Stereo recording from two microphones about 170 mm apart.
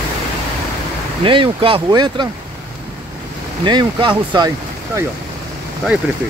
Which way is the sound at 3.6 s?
30° right (ahead or behind).